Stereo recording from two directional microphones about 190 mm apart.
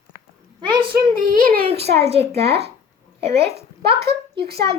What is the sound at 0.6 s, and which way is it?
Child singing, 25° right (ahead or behind).